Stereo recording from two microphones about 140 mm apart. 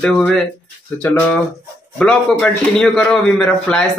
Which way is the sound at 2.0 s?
10° left (ahead or behind).